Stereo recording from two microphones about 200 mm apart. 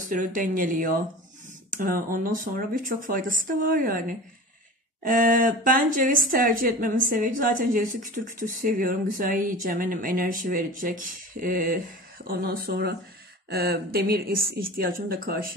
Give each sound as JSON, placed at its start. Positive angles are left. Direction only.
{"t": 0.0, "sound": "a woman's voice", "side_deg": -40}
{"t": 5.0, "sound": "a woman's voice", "side_deg": -40}